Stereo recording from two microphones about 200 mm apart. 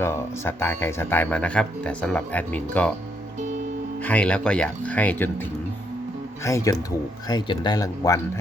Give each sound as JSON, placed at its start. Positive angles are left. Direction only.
{"t": 0.0, "sound": "speech", "side_deg": 10}
{"t": 4.0, "sound": "speech", "side_deg": 5}
{"t": 6.4, "sound": "speech", "side_deg": 15}